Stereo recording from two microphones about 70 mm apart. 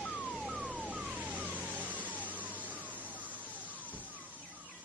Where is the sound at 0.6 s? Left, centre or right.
Centre.